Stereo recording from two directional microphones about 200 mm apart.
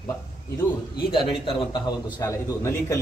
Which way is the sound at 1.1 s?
25° left (ahead or behind).